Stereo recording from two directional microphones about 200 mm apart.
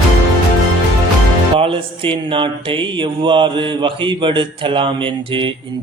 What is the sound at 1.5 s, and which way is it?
Mantra, 25° right (ahead or behind).